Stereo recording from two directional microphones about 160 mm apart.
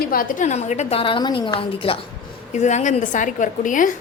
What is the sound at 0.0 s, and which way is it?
A woman's voice, 60° left (ahead or behind).